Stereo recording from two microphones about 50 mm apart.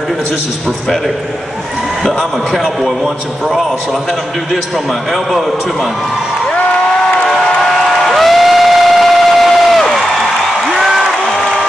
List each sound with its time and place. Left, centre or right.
2.0 s a man's voice: centre
8.0 s crowd: centre
10.7 s applause: centre